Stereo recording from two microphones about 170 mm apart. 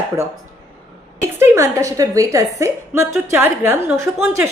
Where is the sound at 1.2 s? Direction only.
15° right (ahead or behind).